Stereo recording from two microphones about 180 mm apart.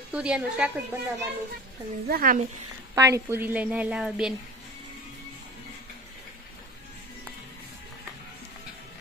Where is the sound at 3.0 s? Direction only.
15° right (ahead or behind).